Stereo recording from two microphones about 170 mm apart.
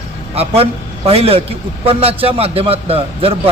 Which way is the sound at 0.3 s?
35° right (ahead or behind).